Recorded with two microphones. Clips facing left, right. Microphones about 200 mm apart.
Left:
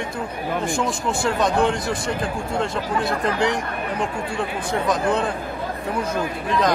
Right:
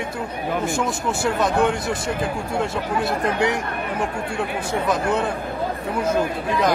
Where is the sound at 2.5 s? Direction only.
5° right (ahead or behind).